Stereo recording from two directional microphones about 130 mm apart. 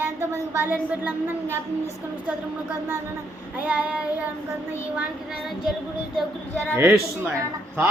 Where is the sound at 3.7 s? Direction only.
10° right (ahead or behind).